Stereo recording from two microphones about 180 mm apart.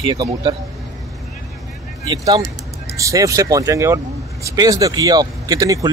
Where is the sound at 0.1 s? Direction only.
25° right (ahead or behind).